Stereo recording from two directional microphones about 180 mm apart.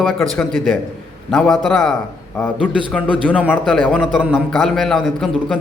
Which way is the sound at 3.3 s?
10° left (ahead or behind).